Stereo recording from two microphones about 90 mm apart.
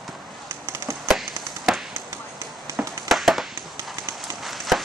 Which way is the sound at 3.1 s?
Centre (ahead or behind).